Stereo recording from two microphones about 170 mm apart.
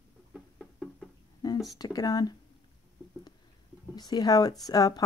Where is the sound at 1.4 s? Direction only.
20° left (ahead or behind).